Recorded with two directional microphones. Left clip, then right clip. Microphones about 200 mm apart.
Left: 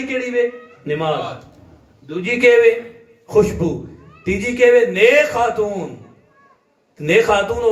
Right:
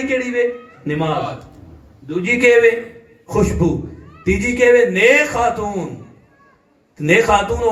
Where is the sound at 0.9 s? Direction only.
30° left (ahead or behind).